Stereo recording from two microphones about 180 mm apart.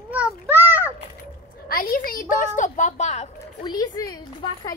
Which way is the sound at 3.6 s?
20° left (ahead or behind).